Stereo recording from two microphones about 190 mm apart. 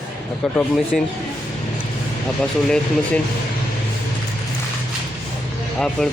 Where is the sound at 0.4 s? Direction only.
Centre (ahead or behind).